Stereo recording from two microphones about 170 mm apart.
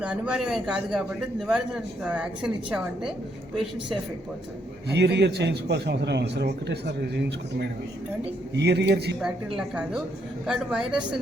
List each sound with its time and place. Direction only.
0.0 s a man's voice: 5° right (ahead or behind)
4.9 s a man's voice: 85° right
9.6 s a man's voice: 5° right (ahead or behind)